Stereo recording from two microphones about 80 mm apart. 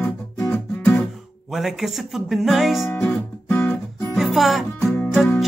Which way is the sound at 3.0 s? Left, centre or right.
Centre.